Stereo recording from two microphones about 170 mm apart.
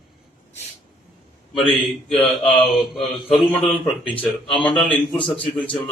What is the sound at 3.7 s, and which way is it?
Speech, 30° left (ahead or behind).